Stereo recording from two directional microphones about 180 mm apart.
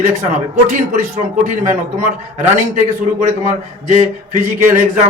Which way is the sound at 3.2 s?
40° right (ahead or behind).